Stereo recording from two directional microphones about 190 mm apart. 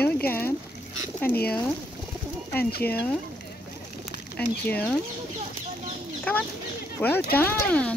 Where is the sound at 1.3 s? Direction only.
5° right (ahead or behind).